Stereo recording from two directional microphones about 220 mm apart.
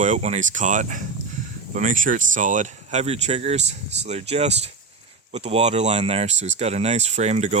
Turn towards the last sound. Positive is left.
turn(degrees=-30)  # may be behind; listen again after turning